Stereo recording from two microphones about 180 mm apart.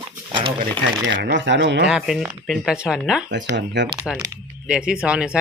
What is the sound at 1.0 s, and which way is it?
Speech, 80° right.